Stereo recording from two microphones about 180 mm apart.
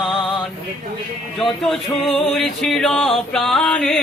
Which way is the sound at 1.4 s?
Centre (ahead or behind).